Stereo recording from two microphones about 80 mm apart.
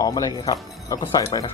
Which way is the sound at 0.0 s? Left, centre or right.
Left.